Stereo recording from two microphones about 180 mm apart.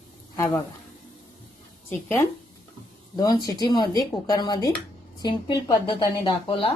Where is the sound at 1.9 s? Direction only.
10° left (ahead or behind).